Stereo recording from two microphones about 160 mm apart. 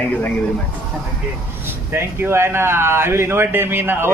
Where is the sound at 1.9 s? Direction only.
15° right (ahead or behind).